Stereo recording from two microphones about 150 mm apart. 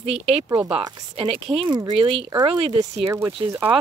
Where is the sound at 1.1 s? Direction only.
40° right (ahead or behind).